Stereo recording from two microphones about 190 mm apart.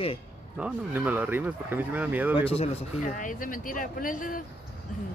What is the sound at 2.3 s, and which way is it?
Speech, 30° left (ahead or behind).